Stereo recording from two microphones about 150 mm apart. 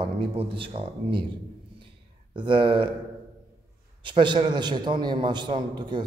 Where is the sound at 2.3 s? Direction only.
35° right (ahead or behind).